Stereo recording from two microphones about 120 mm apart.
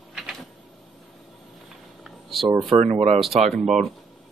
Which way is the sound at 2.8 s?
70° right (ahead or behind).